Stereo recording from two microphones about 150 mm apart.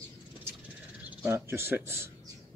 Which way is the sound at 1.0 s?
15° right (ahead or behind).